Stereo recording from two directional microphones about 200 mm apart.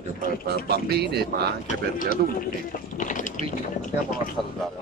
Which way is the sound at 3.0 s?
40° left (ahead or behind).